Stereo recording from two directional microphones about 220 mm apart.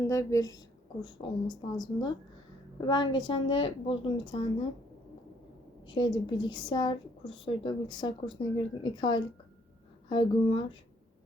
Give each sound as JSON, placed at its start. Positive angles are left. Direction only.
{"t": 0.0, "sound": "a woman's voice", "side_deg": 15}
{"t": 5.9, "sound": "a woman's voice", "side_deg": 20}